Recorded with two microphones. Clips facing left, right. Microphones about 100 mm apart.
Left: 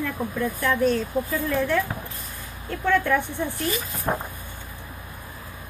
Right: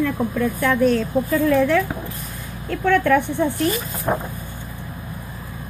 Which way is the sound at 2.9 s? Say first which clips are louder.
Right 5 dB; 70° right (ahead or behind).